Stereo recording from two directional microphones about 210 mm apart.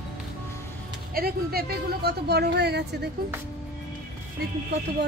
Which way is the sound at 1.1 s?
45° right (ahead or behind).